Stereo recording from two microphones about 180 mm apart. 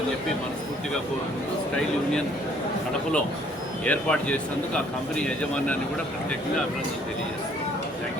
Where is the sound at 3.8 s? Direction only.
5° left (ahead or behind).